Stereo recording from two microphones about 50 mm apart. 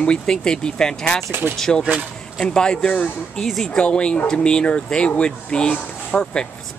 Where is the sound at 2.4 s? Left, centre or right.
Centre.